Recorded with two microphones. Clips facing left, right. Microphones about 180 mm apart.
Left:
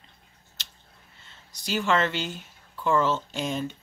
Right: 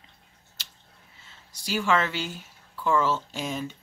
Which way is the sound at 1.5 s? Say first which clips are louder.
Even; 10° right (ahead or behind).